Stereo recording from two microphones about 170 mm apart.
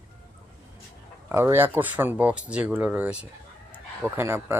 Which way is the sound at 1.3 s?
15° right (ahead or behind).